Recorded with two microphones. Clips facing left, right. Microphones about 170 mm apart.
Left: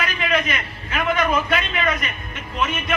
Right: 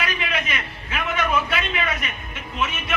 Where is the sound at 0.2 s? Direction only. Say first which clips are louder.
Left 5 dB; 45° left (ahead or behind).